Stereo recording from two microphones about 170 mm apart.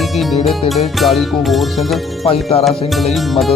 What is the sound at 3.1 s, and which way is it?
Music, centre (ahead or behind).